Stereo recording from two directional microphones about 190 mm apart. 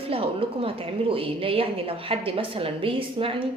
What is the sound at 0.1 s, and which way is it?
A woman's voice, 30° right (ahead or behind).